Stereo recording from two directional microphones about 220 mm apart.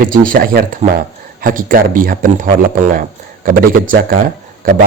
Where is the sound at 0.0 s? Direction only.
40° right (ahead or behind).